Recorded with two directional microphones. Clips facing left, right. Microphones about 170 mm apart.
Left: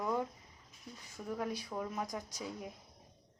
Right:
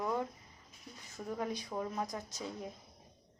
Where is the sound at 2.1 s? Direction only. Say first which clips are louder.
Even; 15° left (ahead or behind).